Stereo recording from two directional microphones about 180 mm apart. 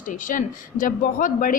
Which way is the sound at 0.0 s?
45° left (ahead or behind).